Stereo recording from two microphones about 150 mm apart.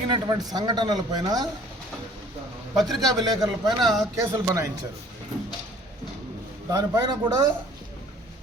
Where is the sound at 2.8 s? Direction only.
Centre (ahead or behind).